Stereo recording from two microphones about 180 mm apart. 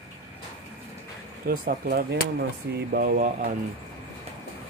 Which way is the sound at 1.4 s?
55° right (ahead or behind).